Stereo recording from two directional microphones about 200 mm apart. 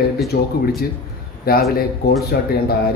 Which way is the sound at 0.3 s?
55° left (ahead or behind).